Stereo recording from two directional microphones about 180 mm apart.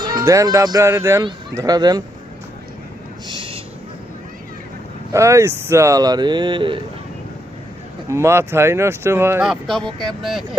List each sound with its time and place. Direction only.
0.0 s speech: 20° right (ahead or behind)
3.2 s a sound: 30° right (ahead or behind)
5.1 s speech: 15° right (ahead or behind)
8.1 s speech: 15° right (ahead or behind)
9.5 s speech: centre (ahead or behind)